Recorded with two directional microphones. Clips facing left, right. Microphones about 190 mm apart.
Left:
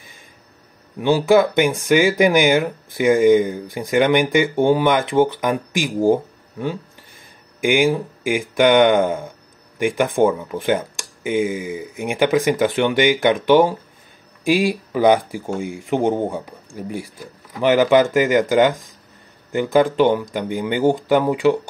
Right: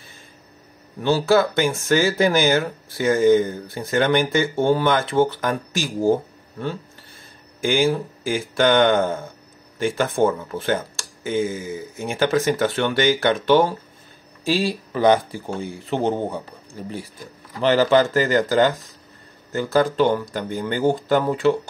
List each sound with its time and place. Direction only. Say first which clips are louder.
0.9 s speech: left 3 dB; 15° left (ahead or behind)